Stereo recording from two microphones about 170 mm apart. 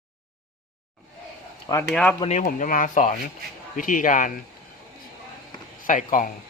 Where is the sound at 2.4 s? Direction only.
50° left (ahead or behind).